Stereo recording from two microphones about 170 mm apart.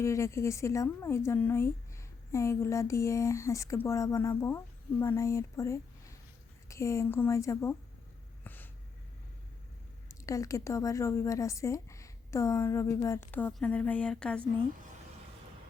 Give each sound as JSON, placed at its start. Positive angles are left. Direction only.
{"t": 0.0, "sound": "a woman's voice", "side_deg": 15}
{"t": 8.4, "sound": "a sound", "side_deg": 10}
{"t": 10.1, "sound": "a woman's voice", "side_deg": 20}